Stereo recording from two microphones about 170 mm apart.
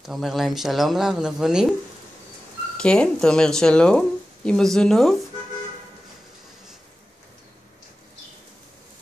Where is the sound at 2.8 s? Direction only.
5° left (ahead or behind).